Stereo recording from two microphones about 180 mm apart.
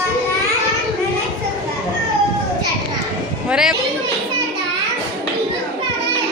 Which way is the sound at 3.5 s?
5° right (ahead or behind).